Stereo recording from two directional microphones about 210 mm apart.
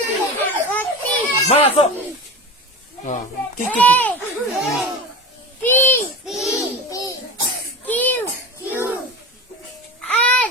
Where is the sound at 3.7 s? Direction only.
10° left (ahead or behind).